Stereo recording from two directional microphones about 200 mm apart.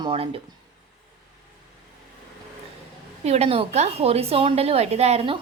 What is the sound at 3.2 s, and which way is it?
A woman's voice, 30° right (ahead or behind).